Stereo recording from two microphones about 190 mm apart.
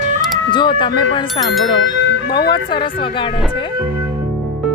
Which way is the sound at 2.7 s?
25° left (ahead or behind).